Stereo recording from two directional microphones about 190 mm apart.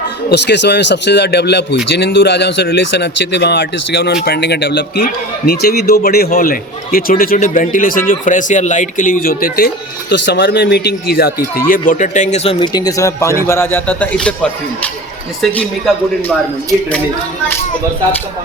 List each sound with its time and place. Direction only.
0.3 s a man's voice: 60° left (ahead or behind); by 14.3 s 10° left (ahead or behind)